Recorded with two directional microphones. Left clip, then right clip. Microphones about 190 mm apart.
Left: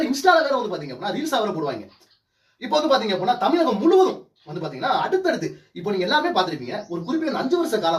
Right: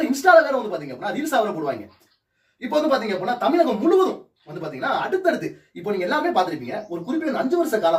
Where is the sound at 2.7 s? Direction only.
5° left (ahead or behind).